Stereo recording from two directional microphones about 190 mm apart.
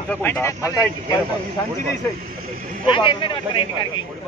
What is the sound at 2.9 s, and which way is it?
A man's voice, 25° left (ahead or behind).